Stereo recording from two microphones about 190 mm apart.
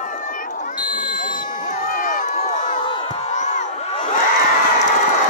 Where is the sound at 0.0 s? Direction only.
45° left (ahead or behind).